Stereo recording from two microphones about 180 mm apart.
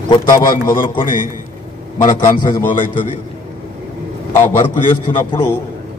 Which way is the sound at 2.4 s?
25° left (ahead or behind).